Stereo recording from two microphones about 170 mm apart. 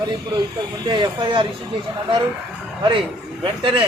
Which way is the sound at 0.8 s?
25° right (ahead or behind).